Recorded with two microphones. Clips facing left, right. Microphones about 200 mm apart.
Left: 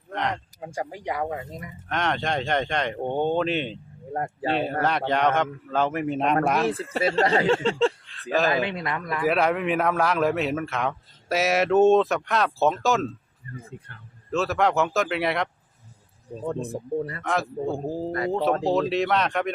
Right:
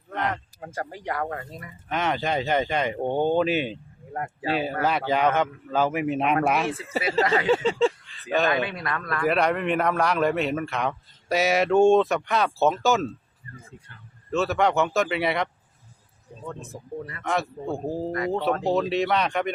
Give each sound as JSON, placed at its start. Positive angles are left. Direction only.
{"t": 0.1, "sound": "a sound", "side_deg": -5}
{"t": 0.6, "sound": "speech", "side_deg": 10}
{"t": 1.9, "sound": "speech", "side_deg": -5}
{"t": 4.1, "sound": "speech", "side_deg": 35}
{"t": 4.8, "sound": "speech", "side_deg": -5}
{"t": 8.4, "sound": "speech", "side_deg": 25}
{"t": 9.2, "sound": "speech", "side_deg": 0}
{"t": 14.3, "sound": "speech", "side_deg": 0}
{"t": 16.4, "sound": "speech", "side_deg": 35}
{"t": 17.7, "sound": "speech", "side_deg": 0}